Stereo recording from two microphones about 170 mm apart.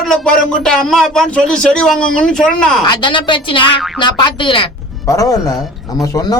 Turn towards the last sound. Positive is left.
turn(degrees=20)  # may be behind; listen again after turning